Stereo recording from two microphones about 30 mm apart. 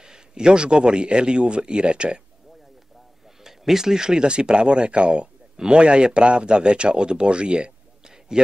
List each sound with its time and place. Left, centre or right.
0.0 s a man's voice: right
3.4 s a man's voice: centre; by 7.7 s right